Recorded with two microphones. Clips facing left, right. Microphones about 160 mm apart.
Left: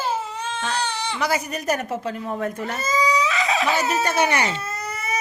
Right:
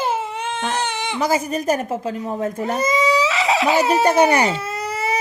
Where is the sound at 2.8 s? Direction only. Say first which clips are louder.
Right 3 dB; 20° right (ahead or behind).